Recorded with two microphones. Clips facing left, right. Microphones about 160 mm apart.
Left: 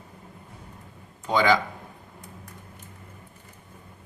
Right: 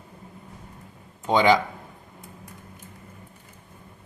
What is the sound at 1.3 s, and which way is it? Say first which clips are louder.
Speech: right 3 dB; 25° right (ahead or behind).